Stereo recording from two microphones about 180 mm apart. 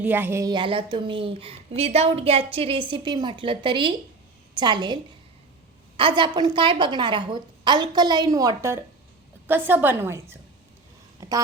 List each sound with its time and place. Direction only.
0.0 s speech: 10° right (ahead or behind)
6.0 s a woman's voice: 25° right (ahead or behind)